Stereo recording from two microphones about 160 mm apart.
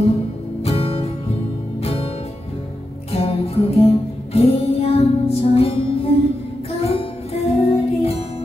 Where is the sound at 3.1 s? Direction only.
40° left (ahead or behind).